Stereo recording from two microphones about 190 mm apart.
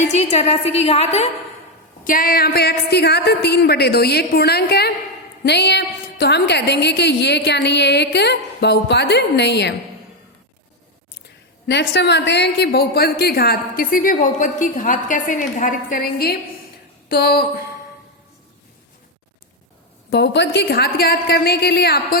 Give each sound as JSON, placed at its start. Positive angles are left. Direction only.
{"t": 0.0, "sound": "a woman's voice", "side_deg": 35}
{"t": 2.0, "sound": "a woman's voice", "side_deg": 50}
{"t": 11.6, "sound": "a woman's voice", "side_deg": 65}
{"t": 20.1, "sound": "a woman's voice", "side_deg": 65}